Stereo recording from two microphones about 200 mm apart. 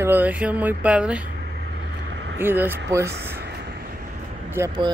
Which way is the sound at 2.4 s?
10° right (ahead or behind).